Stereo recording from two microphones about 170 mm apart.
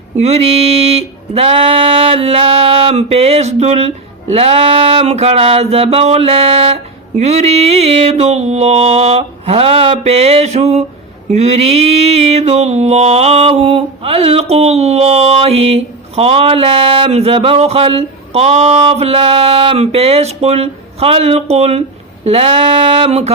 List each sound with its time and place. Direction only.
0.2 s mantra: 40° right (ahead or behind)